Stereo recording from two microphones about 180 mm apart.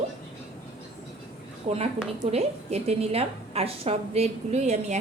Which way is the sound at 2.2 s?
35° right (ahead or behind).